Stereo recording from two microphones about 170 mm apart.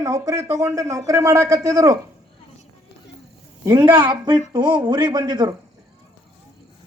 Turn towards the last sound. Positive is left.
turn(degrees=-25)  # may be behind; listen again after turning